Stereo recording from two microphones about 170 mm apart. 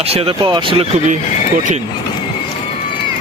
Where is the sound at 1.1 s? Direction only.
50° right (ahead or behind).